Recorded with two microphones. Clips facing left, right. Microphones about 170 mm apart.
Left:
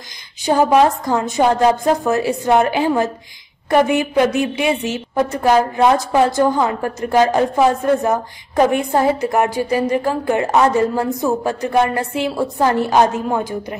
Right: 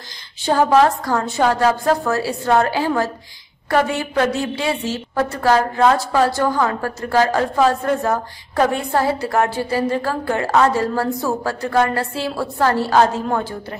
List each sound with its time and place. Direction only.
0.5 s a woman's voice: 15° left (ahead or behind)